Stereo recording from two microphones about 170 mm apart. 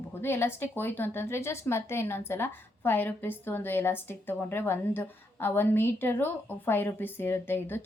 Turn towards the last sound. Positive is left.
turn(degrees=15)  # may be behind; listen again after turning